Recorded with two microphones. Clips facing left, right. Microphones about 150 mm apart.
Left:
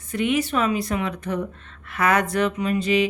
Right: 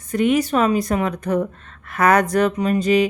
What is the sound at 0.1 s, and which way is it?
Speech, 40° right (ahead or behind).